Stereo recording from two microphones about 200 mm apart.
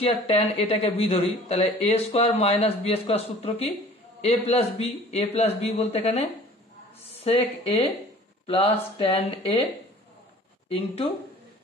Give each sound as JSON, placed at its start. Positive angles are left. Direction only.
{"t": 0.0, "sound": "a man's voice", "side_deg": 30}
{"t": 10.7, "sound": "a man's voice", "side_deg": 30}